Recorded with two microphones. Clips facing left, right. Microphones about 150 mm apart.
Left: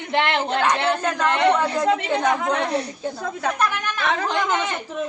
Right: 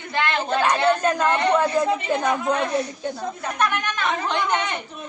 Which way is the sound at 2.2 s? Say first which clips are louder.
Left 1 dB; 85° left.